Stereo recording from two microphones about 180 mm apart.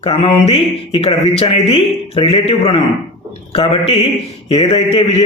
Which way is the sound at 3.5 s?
30° left (ahead or behind).